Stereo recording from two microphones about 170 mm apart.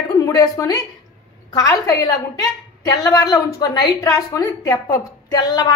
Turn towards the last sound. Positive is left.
turn(degrees=25)  # may be behind; listen again after turning